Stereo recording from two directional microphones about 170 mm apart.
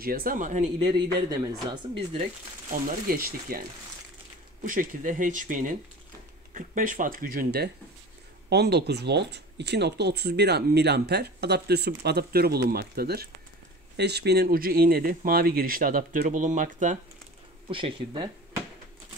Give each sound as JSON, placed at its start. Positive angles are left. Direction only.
{"t": 0.0, "sound": "speech", "side_deg": -60}
{"t": 1.3, "sound": "speech", "side_deg": -20}
{"t": 2.7, "sound": "speech", "side_deg": -55}
{"t": 4.6, "sound": "speech", "side_deg": -50}
{"t": 8.5, "sound": "speech", "side_deg": -75}
{"t": 17.6, "sound": "speech", "side_deg": -30}